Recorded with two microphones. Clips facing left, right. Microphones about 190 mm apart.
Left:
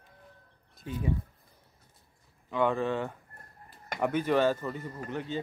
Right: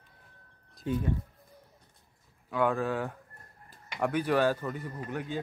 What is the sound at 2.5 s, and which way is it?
Speech, 5° right (ahead or behind).